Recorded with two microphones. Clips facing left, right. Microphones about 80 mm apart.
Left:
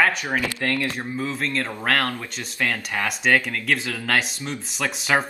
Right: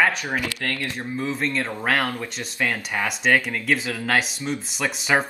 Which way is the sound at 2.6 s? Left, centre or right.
Centre.